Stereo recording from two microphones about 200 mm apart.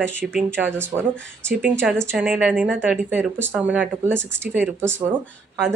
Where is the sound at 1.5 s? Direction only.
Centre (ahead or behind).